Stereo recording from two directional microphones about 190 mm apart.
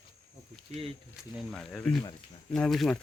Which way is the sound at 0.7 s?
35° right (ahead or behind).